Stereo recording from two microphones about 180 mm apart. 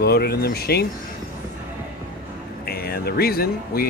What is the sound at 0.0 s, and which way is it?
Speech, 60° left (ahead or behind).